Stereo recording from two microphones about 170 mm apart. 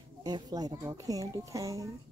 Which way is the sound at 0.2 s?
25° right (ahead or behind).